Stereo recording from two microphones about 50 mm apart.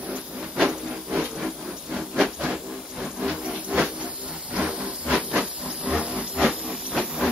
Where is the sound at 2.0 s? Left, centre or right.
Centre.